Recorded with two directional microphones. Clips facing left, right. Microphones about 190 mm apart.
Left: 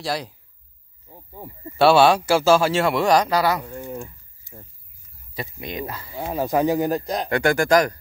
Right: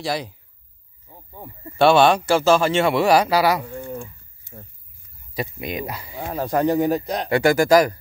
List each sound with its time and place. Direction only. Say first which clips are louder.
0.0 s speech: right 1 dB; centre (ahead or behind)
1.8 s speech: even; 5° left (ahead or behind); by 3.6 s 10° right (ahead or behind)
3.8 s speech: even; 15° left (ahead or behind)
5.3 s speech: right 4 dB; 15° right (ahead or behind)
6.1 s speech: left 1 dB; 5° left (ahead or behind)